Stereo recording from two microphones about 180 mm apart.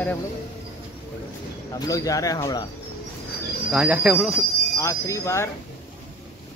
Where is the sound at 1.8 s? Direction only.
20° left (ahead or behind).